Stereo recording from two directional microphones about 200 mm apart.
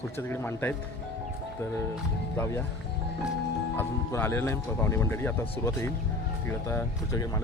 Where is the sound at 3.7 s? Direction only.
10° left (ahead or behind).